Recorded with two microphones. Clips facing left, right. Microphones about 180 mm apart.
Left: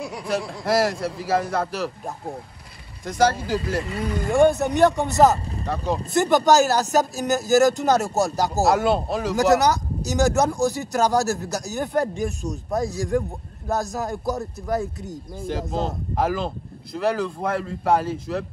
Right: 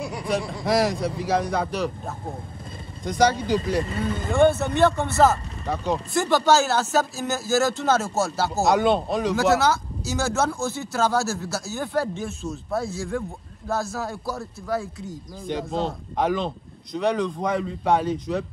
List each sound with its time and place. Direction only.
0.0 s speech: centre (ahead or behind)
3.1 s speech: centre (ahead or behind)
4.3 s speech: 15° left (ahead or behind)
5.9 s speech: centre (ahead or behind)
6.2 s speech: 15° left (ahead or behind)
8.6 s speech: centre (ahead or behind)
9.6 s a man's voice: 15° left (ahead or behind)
15.0 s speech: centre (ahead or behind)